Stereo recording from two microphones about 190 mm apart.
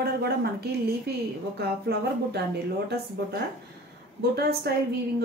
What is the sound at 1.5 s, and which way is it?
Speech, 60° right (ahead or behind).